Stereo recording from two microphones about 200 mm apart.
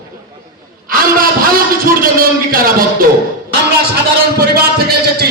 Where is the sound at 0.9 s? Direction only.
45° right (ahead or behind).